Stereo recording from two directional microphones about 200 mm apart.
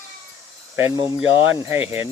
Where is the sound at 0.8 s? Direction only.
15° right (ahead or behind).